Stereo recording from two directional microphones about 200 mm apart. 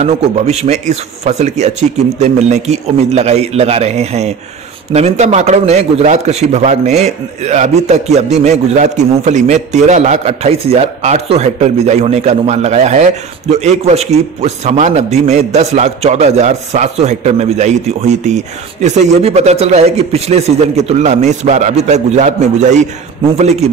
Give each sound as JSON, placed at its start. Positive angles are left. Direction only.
{"t": 0.0, "sound": "a man's voice", "side_deg": -35}